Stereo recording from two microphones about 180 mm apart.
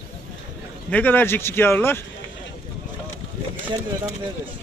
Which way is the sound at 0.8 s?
10° left (ahead or behind).